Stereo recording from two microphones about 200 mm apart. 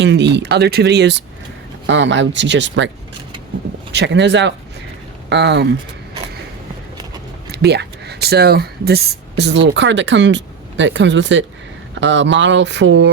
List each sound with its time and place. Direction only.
0.0 s speech: 60° right (ahead or behind)
3.9 s speech: 60° right (ahead or behind)
7.5 s speech: 55° right (ahead or behind)